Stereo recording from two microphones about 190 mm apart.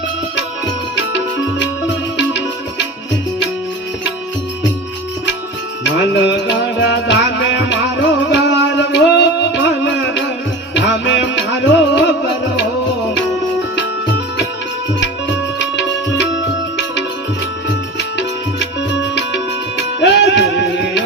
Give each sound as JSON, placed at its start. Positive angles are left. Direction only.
{"t": 2.1, "sound": "music", "side_deg": 70}
{"t": 5.8, "sound": "music", "side_deg": 65}
{"t": 15.0, "sound": "music", "side_deg": 65}
{"t": 18.9, "sound": "music", "side_deg": 70}